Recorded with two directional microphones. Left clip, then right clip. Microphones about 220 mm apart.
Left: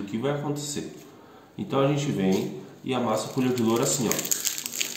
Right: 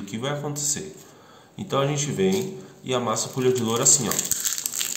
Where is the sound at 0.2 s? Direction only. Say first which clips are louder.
Right 1 dB; 50° right (ahead or behind).